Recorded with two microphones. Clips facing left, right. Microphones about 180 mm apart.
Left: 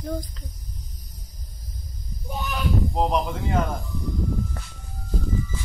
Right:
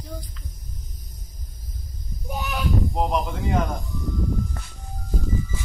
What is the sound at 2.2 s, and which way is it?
Speech, centre (ahead or behind).